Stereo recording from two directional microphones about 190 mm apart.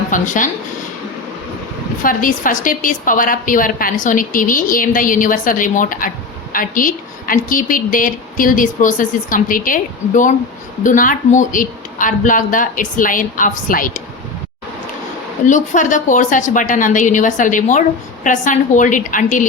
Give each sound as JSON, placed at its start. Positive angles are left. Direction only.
{"t": 0.1, "sound": "a woman's voice", "side_deg": 45}
{"t": 2.0, "sound": "a woman's voice", "side_deg": 45}
{"t": 15.4, "sound": "a woman's voice", "side_deg": 40}